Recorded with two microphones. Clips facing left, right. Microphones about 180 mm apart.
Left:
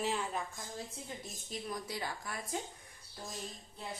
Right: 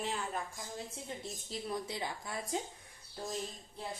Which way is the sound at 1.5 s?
25° right (ahead or behind).